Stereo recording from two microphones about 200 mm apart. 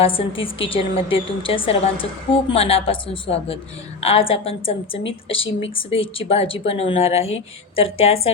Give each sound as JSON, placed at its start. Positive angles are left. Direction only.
{"t": 0.0, "sound": "a woman's voice", "side_deg": 25}